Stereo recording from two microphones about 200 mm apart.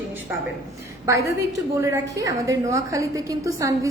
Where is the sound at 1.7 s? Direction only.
15° right (ahead or behind).